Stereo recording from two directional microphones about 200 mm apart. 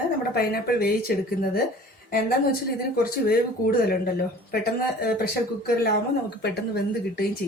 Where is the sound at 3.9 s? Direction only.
50° left (ahead or behind).